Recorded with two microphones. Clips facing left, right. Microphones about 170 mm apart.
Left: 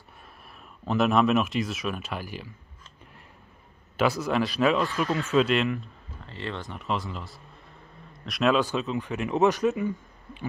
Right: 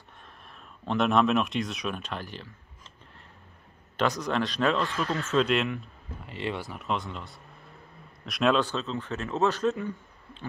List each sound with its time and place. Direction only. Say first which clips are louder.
0.8 s speech: left 1 dB; 5° left (ahead or behind)
4.2 s speech: left 3 dB; 5° left (ahead or behind)
6.2 s speech: right 2 dB; 15° right (ahead or behind)
6.7 s speech: left 1 dB; centre (ahead or behind)
8.6 s speech: left 3 dB; 15° left (ahead or behind)